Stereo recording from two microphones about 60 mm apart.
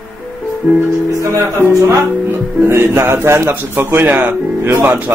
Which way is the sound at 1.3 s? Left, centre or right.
Right.